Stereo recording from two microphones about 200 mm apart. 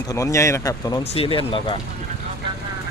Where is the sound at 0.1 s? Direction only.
15° left (ahead or behind).